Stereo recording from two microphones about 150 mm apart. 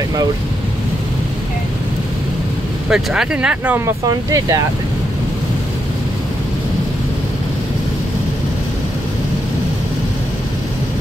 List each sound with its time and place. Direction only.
2.9 s speech: 5° right (ahead or behind); by 4.6 s 20° right (ahead or behind)